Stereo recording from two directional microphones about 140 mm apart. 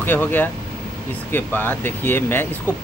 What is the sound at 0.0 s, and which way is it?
Speech, 15° left (ahead or behind).